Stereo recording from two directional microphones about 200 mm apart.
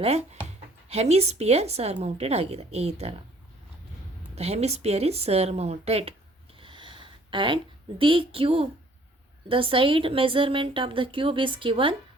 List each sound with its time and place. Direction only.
0.0 s a woman's voice: 30° right (ahead or behind)
4.4 s a woman's voice: 30° right (ahead or behind)